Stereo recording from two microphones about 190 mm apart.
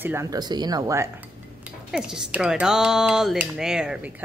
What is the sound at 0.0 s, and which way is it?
Speech, 15° right (ahead or behind).